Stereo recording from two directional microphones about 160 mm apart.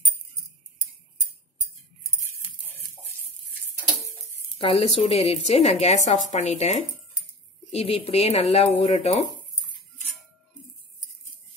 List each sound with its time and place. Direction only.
4.6 s a woman's voice: 35° left (ahead or behind)